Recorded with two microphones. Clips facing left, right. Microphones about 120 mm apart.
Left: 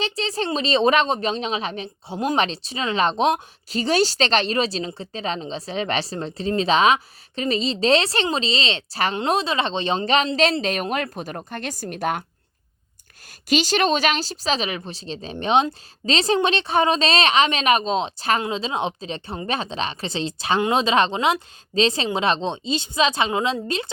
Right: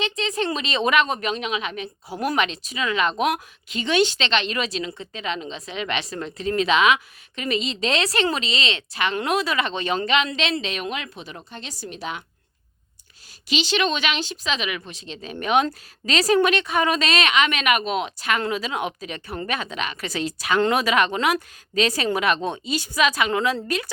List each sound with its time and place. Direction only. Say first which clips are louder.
0.0 s speech: even; 35° left (ahead or behind); by 12.2 s 50° left (ahead or behind)
13.5 s speech: left 3 dB; 45° left (ahead or behind); by 23.9 s 25° left (ahead or behind)